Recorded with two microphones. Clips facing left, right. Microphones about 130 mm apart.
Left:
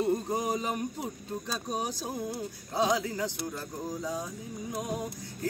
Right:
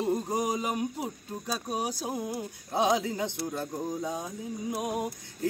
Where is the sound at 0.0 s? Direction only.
15° right (ahead or behind).